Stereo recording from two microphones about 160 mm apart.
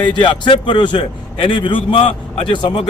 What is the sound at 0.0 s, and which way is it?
A man's voice, 30° left (ahead or behind).